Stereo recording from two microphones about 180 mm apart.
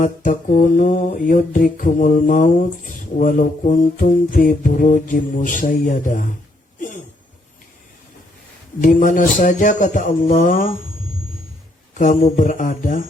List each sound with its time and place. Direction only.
0.0 s mantra: 45° left (ahead or behind)
8.8 s mantra: 50° left (ahead or behind)
11.9 s mantra: 45° left (ahead or behind)